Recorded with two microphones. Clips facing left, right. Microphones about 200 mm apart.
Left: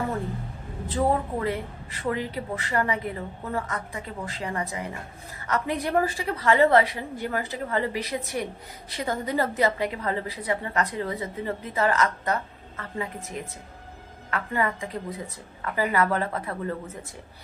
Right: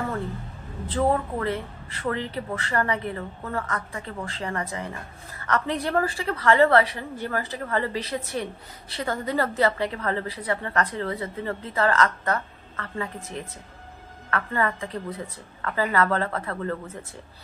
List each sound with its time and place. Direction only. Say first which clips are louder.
0.9 s a woman's voice: right 1 dB; 15° left (ahead or behind)